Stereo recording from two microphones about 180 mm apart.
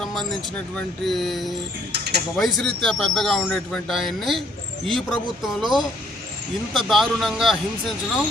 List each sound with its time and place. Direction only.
0.0 s vehicle: centre (ahead or behind)
0.8 s speech: centre (ahead or behind)
1.9 s speech: 65° right (ahead or behind)
2.3 s speech: centre (ahead or behind)
6.8 s speech: centre (ahead or behind)